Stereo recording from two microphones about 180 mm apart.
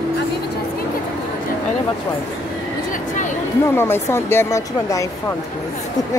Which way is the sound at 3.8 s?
15° left (ahead or behind).